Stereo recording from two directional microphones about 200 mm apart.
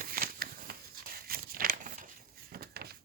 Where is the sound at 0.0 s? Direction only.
45° right (ahead or behind).